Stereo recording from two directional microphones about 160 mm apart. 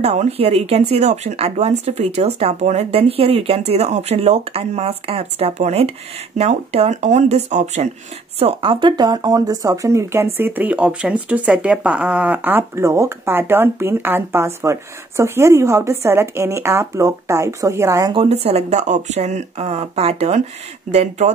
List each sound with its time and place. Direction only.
0.0 s speech: 45° right (ahead or behind); by 18.1 s 20° right (ahead or behind)
18.1 s speech: 40° right (ahead or behind)